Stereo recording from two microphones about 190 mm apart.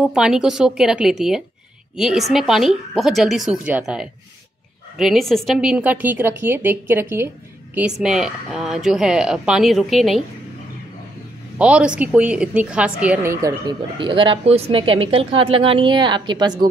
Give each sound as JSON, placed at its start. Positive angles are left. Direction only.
{"t": 0.1, "sound": "a woman's voice", "side_deg": -5}
{"t": 11.5, "sound": "a woman's voice", "side_deg": -5}